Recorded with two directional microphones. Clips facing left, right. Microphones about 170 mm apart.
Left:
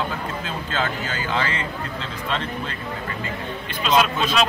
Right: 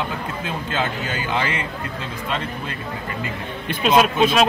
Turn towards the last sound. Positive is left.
turn(degrees=-55)  # may be behind; listen again after turning